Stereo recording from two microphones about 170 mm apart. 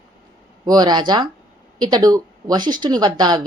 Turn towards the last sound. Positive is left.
turn(degrees=-25)  # may be behind; listen again after turning